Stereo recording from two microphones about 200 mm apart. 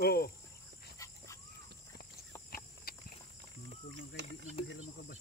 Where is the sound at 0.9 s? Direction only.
15° left (ahead or behind).